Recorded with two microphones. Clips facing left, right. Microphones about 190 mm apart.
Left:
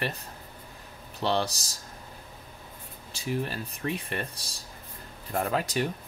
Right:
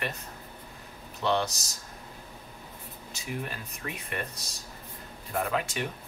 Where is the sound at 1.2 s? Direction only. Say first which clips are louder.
Even; 35° left (ahead or behind).